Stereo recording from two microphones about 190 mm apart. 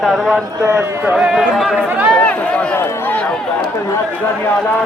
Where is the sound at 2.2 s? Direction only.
5° left (ahead or behind).